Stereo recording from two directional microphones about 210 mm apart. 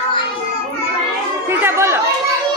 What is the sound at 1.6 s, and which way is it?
Speech, 10° right (ahead or behind).